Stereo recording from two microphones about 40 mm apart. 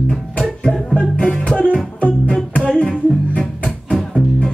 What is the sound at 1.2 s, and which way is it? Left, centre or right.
Music, left.